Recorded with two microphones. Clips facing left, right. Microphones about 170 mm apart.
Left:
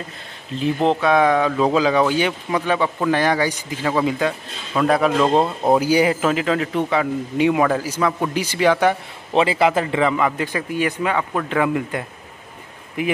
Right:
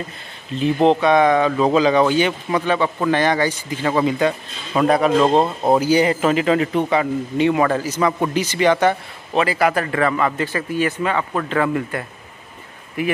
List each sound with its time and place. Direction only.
0.8 s a man's voice: 5° left (ahead or behind)
5.8 s a man's voice: 10° left (ahead or behind)
9.3 s a man's voice: 25° left (ahead or behind)